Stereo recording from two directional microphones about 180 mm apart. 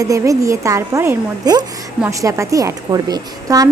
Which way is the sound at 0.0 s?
20° right (ahead or behind).